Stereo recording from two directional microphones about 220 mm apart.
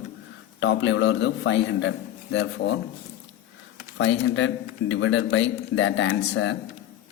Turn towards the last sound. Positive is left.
turn(degrees=55)  # may be behind; listen again after turning